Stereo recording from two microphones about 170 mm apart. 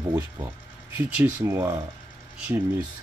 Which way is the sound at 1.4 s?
15° right (ahead or behind).